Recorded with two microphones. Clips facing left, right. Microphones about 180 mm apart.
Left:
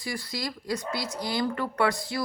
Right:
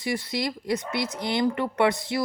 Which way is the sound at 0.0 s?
20° right (ahead or behind).